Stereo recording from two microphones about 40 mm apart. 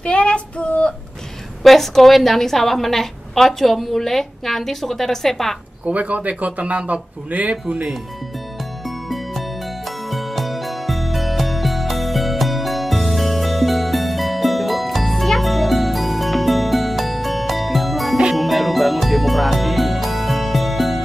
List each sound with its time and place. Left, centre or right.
0.0 s child singing: left
1.6 s a woman's voice: centre
5.9 s speech: right
8.8 s music: centre